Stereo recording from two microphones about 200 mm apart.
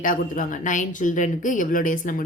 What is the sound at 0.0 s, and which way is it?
A woman's voice, 40° left (ahead or behind).